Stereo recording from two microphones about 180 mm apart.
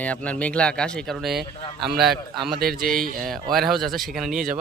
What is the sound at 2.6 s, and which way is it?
Speech, 55° right (ahead or behind).